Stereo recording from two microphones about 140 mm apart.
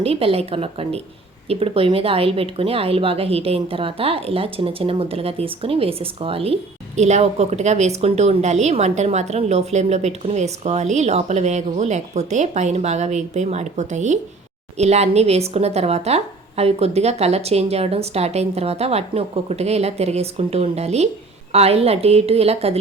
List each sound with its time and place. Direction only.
0.0 s speech: 45° right (ahead or behind)